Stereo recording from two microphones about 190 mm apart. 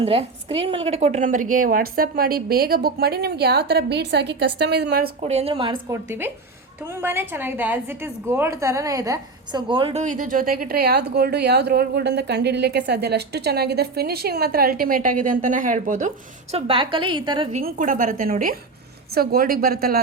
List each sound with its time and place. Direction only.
0.0 s a woman's voice: 30° right (ahead or behind); by 5.1 s 55° right (ahead or behind)
5.2 s a woman's voice: 35° right (ahead or behind)
5.9 s a woman's voice: 10° right (ahead or behind)
17.5 s a woman's voice: 45° right (ahead or behind)